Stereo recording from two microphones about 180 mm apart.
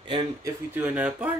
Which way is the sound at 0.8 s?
10° right (ahead or behind).